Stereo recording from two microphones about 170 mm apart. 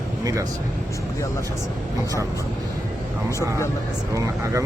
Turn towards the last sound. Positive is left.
turn(degrees=-20)  # may be behind; listen again after turning